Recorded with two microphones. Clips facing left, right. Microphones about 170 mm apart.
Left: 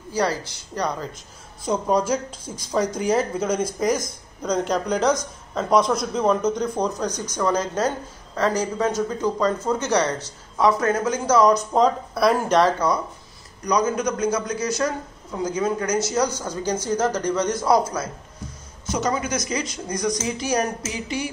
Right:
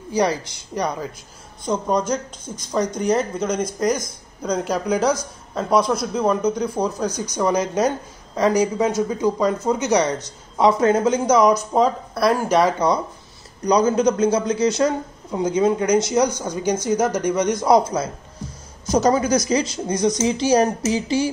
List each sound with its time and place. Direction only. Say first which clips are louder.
0.1 s speech: right 3 dB; 15° right (ahead or behind)
1.6 s speech: even; 5° left (ahead or behind); by 13.0 s 20° right (ahead or behind)
13.7 s a man's voice: right 5 dB; 30° right (ahead or behind)
18.9 s a man's voice: right 7 dB; 35° right (ahead or behind)